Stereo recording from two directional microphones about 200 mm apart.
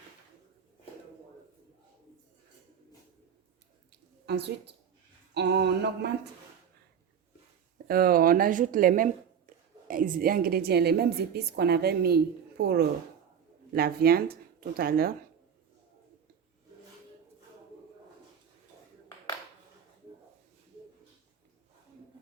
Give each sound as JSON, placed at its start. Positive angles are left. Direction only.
{"t": 4.3, "sound": "speech", "side_deg": -55}
{"t": 5.3, "sound": "a sound", "side_deg": -55}
{"t": 7.9, "sound": "a woman's voice", "side_deg": -50}